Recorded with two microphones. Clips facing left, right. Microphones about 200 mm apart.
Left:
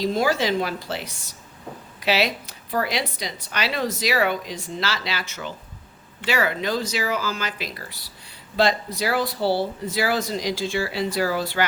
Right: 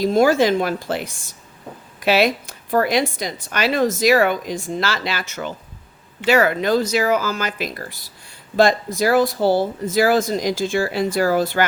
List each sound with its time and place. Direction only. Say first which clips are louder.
0.0 s a woman's voice: right 7 dB; 50° right (ahead or behind)